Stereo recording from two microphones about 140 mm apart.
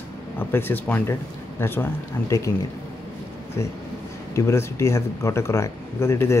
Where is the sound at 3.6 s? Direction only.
20° left (ahead or behind).